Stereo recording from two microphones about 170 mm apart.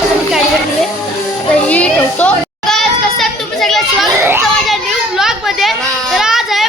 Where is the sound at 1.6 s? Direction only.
10° left (ahead or behind).